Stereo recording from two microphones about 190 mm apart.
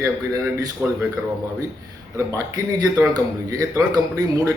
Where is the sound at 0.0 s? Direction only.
15° right (ahead or behind).